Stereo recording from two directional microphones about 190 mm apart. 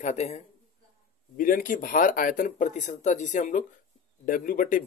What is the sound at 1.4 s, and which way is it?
Speech, 45° left (ahead or behind).